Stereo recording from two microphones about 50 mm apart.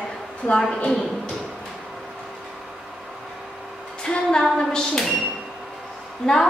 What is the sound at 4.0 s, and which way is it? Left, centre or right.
A woman's voice, centre.